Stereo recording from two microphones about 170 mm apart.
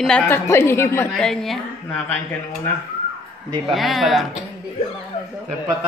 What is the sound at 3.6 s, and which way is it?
Speech, centre (ahead or behind).